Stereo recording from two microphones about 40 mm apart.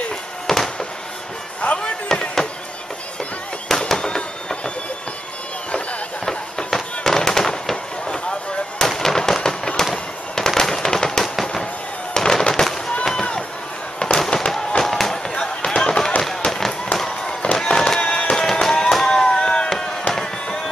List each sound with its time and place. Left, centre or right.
0.5 s fireworks: centre
1.6 s basketball bounce: left
2.0 s fireworks: centre
3.9 s fireworks: centre
6.2 s fireworks: centre
13.0 s run: centre
14.1 s fireworks: centre
19.0 s chop: left
20.2 s fireworks: centre